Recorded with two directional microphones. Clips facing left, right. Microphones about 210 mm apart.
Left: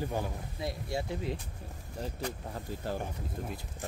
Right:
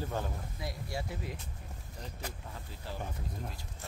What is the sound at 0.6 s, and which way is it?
Speech, 25° left (ahead or behind).